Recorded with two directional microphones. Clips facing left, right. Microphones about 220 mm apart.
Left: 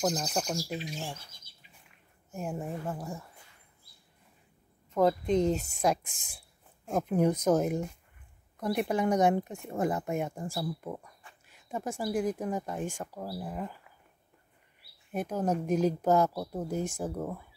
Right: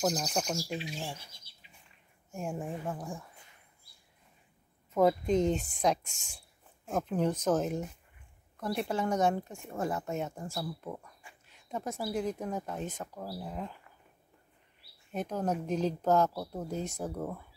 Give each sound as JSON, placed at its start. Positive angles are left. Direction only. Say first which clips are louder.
{"t": 0.0, "sound": "owl", "louder": "left 1 dB", "side_deg": 0}
{"t": 2.3, "sound": "owl", "louder": "left 1 dB", "side_deg": 5}
{"t": 4.9, "sound": "owl", "louder": "even", "side_deg": -5}
{"t": 7.0, "sound": "speech", "louder": "left 4 dB", "side_deg": 10}
{"t": 15.1, "sound": "speech", "louder": "left 2 dB", "side_deg": 10}
{"t": 17.0, "sound": "owl", "louder": "left 2 dB", "side_deg": 5}